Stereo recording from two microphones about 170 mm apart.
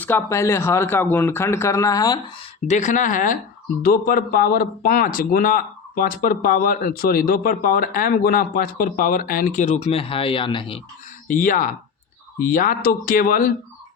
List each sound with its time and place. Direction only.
0.0 s speech: 15° left (ahead or behind)
2.6 s speech: 45° left (ahead or behind); by 10.8 s 30° left (ahead or behind)
11.3 s speech: 50° left (ahead or behind)